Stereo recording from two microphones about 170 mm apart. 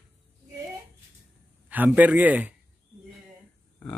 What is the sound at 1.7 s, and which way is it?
Speech, 10° right (ahead or behind).